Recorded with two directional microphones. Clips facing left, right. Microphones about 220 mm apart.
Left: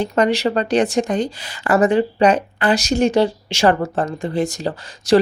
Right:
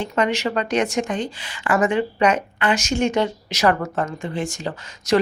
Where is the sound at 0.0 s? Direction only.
35° left (ahead or behind).